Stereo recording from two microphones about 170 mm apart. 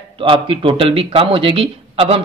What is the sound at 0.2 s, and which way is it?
Speech, 30° right (ahead or behind).